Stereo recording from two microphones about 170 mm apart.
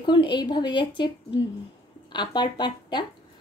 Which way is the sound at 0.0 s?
25° left (ahead or behind).